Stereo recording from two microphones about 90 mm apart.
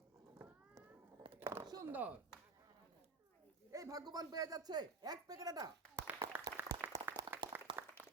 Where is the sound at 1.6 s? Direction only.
45° right (ahead or behind).